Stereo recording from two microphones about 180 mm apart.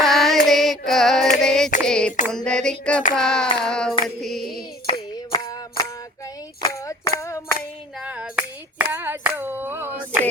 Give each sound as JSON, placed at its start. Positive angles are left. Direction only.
{"t": 0.0, "sound": "carnatic music", "side_deg": 0}
{"t": 0.4, "sound": "female singing", "side_deg": 0}
{"t": 1.8, "sound": "music", "side_deg": 5}
{"t": 4.9, "sound": "music", "side_deg": 25}
{"t": 6.6, "sound": "a sound", "side_deg": 15}
{"t": 7.2, "sound": "music", "side_deg": 15}
{"t": 8.0, "sound": "clapping", "side_deg": -5}